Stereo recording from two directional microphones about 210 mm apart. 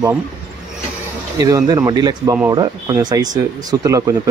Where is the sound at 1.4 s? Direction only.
15° right (ahead or behind).